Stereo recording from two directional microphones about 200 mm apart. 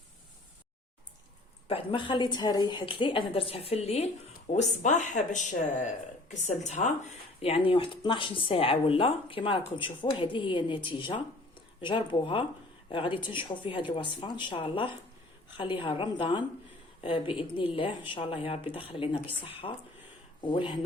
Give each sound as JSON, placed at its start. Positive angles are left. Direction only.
{"t": 1.6, "sound": "speech", "side_deg": 25}